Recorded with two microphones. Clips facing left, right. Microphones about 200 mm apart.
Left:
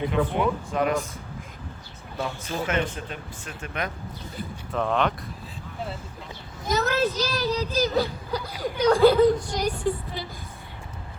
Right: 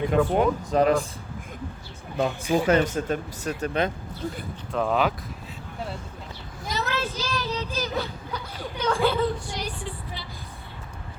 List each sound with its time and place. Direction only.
0.3 s speech: 35° right (ahead or behind)
2.1 s speech: 15° right (ahead or behind)
2.6 s speech: 40° right (ahead or behind)
4.7 s speech: 5° right (ahead or behind)
6.7 s a child's voice: 45° left (ahead or behind)